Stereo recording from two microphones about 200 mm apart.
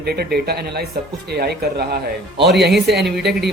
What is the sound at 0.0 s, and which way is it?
Speech, 50° right (ahead or behind).